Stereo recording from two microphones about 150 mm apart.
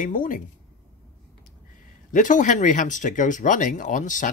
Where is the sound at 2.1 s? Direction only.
60° left (ahead or behind).